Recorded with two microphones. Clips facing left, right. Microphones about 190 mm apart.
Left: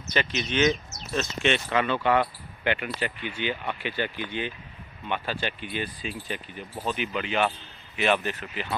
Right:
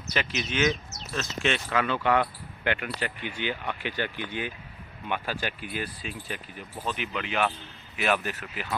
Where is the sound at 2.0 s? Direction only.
15° left (ahead or behind).